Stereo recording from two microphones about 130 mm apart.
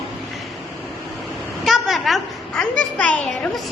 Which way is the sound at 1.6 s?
Centre (ahead or behind).